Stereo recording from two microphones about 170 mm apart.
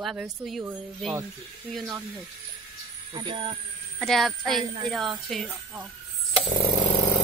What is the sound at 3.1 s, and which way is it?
Speech, 30° right (ahead or behind).